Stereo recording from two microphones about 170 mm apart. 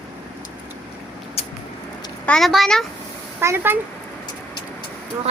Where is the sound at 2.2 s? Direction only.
5° left (ahead or behind).